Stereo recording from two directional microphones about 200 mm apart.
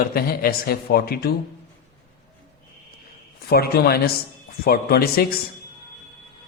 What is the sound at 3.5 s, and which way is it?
A woman's voice, 50° left (ahead or behind).